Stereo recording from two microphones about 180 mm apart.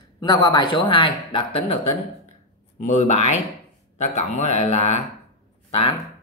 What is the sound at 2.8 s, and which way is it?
Speech, 40° left (ahead or behind).